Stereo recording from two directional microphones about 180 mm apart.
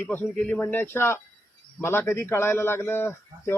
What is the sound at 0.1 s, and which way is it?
A man's voice, 10° left (ahead or behind).